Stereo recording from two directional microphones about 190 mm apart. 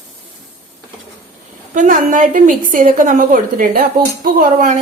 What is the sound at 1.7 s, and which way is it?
A woman's voice, 40° right (ahead or behind).